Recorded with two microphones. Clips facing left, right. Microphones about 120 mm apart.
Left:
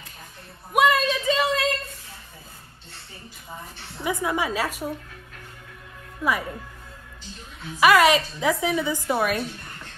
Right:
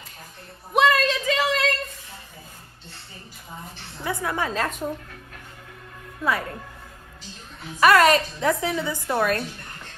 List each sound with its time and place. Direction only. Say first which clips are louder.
0.7 s a woman's voice: even; 15° left (ahead or behind)
4.0 s a woman's voice: left 1 dB; 15° left (ahead or behind)
6.2 s a woman's voice: even; 10° left (ahead or behind)
7.8 s a woman's voice: right 1 dB; 10° left (ahead or behind)